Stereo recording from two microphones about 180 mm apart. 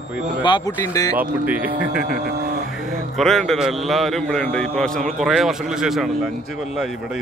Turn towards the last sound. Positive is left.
turn(degrees=-5)  # may be behind; listen again after turning